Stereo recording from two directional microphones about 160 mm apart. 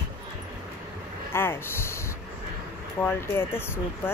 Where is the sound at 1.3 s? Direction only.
15° left (ahead or behind).